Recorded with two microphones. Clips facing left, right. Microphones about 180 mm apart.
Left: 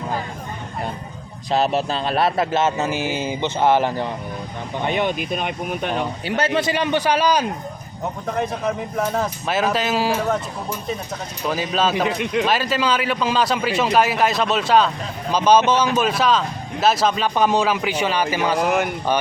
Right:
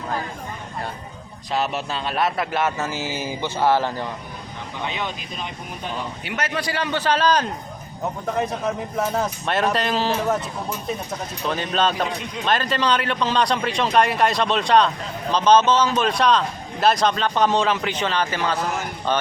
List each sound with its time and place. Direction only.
1.5 s a man's voice: 30° left (ahead or behind)
4.9 s speech: 55° left (ahead or behind)
6.2 s a man's voice: 30° left (ahead or behind); by 7.4 s 10° left (ahead or behind)
8.3 s a man's voice: centre (ahead or behind)
11.4 s a man's voice: 5° left (ahead or behind)
12.2 s speech: 75° left (ahead or behind)
12.5 s a man's voice: 5° left (ahead or behind)